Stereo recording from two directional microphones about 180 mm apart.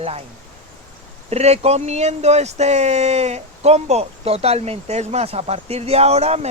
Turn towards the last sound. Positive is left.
turn(degrees=-35)  # may be behind; listen again after turning